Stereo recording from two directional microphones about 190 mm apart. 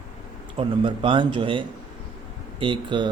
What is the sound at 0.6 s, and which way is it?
A man's voice, 25° right (ahead or behind).